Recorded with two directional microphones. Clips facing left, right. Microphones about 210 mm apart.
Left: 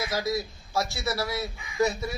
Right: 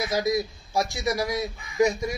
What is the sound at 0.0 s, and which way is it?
Speech, 15° right (ahead or behind).